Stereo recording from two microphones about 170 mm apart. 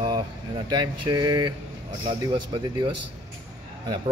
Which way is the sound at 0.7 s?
25° right (ahead or behind).